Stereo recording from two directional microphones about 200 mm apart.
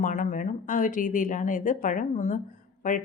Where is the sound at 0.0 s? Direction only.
40° left (ahead or behind).